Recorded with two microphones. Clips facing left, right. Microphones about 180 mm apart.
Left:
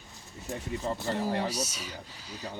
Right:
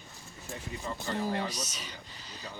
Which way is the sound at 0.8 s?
35° left (ahead or behind).